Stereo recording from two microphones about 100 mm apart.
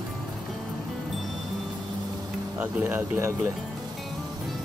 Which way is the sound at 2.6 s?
20° right (ahead or behind).